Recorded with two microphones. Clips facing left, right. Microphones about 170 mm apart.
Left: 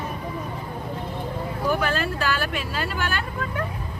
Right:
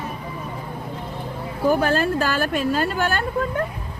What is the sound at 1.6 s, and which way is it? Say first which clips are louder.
Speech: right 6 dB; 40° right (ahead or behind).